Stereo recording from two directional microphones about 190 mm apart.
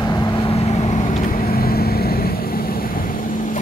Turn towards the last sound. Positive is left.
turn(degrees=50)  # may be behind; listen again after turning